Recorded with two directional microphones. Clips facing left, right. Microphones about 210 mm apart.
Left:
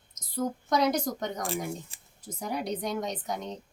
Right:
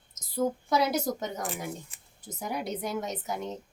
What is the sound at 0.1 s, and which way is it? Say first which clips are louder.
A woman's voice: right 3 dB; 5° right (ahead or behind).